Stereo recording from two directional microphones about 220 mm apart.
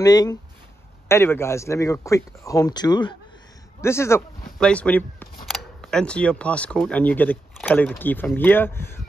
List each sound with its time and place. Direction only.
0.0 s speech: 15° left (ahead or behind)